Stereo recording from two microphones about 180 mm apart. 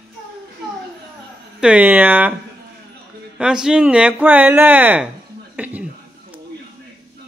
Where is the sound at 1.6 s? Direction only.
5° right (ahead or behind).